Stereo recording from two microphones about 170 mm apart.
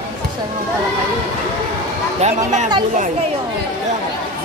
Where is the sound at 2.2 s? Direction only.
45° right (ahead or behind).